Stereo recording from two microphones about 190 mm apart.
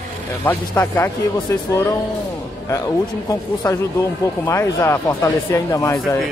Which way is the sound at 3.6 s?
15° left (ahead or behind).